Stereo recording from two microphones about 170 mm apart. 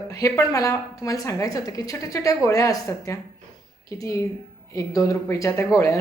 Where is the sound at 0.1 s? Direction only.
20° left (ahead or behind).